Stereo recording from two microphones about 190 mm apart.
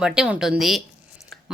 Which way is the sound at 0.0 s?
5° right (ahead or behind).